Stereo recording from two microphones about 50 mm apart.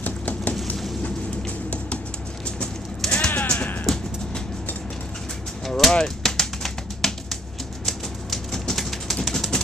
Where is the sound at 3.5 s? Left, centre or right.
Left.